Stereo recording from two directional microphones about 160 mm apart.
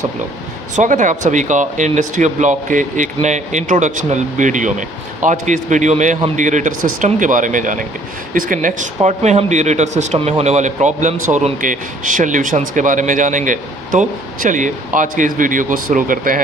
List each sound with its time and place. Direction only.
0.7 s speech: 50° right (ahead or behind)